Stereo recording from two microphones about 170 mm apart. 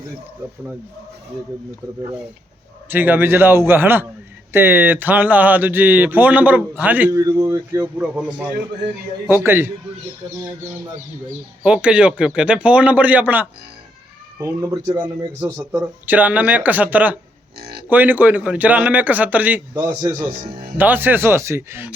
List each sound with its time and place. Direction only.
2.9 s speech: 10° right (ahead or behind)
11.6 s speech: 5° right (ahead or behind)
17.6 s livestock: 70° right (ahead or behind)
17.8 s speech: 10° right (ahead or behind)